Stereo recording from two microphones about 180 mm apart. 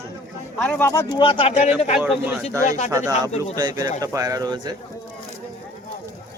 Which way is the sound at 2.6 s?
40° left (ahead or behind).